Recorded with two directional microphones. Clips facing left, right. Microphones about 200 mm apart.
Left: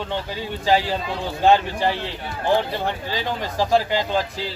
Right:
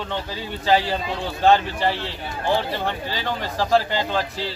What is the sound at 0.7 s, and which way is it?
Speech, 10° left (ahead or behind).